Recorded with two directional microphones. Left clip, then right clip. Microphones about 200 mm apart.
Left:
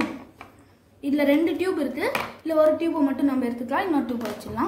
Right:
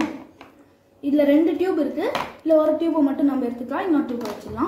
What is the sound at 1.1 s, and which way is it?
Speech, 20° left (ahead or behind).